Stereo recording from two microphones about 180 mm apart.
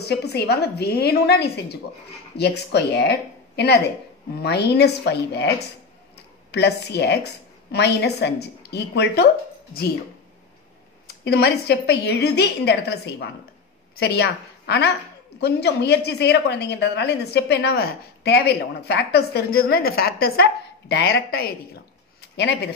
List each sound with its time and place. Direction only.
0.0 s a woman's voice: 65° left (ahead or behind)
6.5 s a woman's voice: 70° left (ahead or behind)
11.2 s a woman's voice: 65° left (ahead or behind)